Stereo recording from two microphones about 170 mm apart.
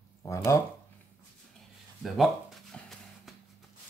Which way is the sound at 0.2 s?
15° left (ahead or behind).